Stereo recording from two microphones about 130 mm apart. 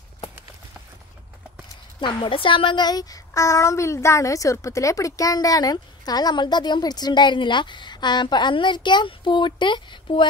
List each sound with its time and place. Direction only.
2.0 s a woman's voice: 40° left (ahead or behind)